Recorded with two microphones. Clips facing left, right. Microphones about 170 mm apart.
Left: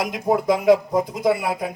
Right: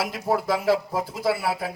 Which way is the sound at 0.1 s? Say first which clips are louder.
Left 4 dB; 20° left (ahead or behind).